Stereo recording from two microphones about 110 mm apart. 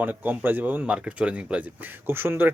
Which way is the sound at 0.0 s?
15° right (ahead or behind).